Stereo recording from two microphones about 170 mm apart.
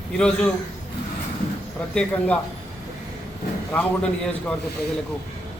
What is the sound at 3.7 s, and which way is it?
Speech, 5° left (ahead or behind).